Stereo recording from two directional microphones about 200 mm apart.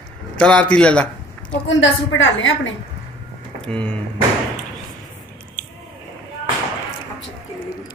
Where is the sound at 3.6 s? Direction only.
5° left (ahead or behind).